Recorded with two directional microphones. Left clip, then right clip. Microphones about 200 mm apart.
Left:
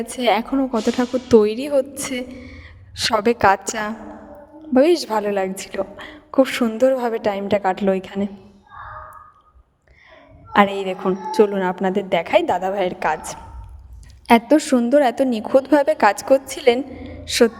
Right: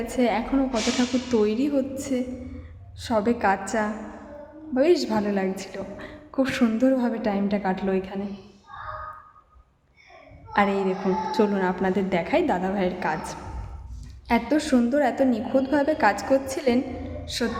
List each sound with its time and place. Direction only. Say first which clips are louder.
0.0 s a woman's voice: left 5 dB; 40° left (ahead or behind)
10.5 s a woman's voice: left 5 dB; 45° left (ahead or behind)